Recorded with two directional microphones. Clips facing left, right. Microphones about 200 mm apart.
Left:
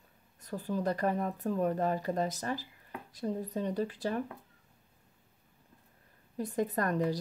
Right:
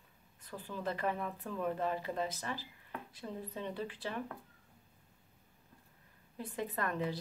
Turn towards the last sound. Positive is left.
turn(degrees=40)  # may be behind; listen again after turning